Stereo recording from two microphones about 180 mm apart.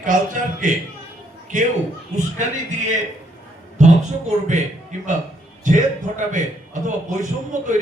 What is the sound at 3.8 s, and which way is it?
Speech, 40° right (ahead or behind).